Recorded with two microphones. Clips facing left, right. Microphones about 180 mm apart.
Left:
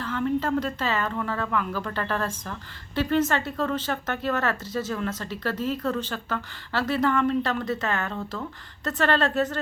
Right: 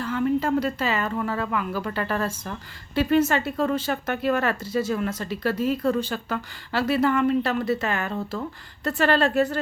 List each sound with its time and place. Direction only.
0.0 s a woman's voice: 10° right (ahead or behind)